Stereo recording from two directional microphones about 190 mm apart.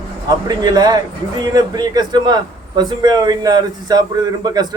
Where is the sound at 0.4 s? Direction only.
20° right (ahead or behind).